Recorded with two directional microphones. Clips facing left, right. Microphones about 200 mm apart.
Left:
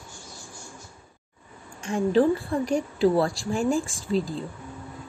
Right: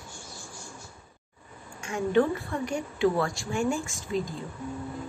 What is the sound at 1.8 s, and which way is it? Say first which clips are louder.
Speech: left 3 dB; 30° left (ahead or behind).